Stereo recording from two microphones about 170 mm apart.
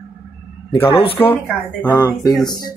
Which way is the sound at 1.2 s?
10° left (ahead or behind).